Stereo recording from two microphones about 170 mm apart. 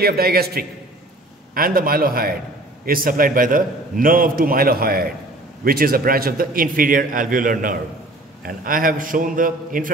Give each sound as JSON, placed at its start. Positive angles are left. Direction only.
{"t": 0.0, "sound": "a man's voice", "side_deg": -65}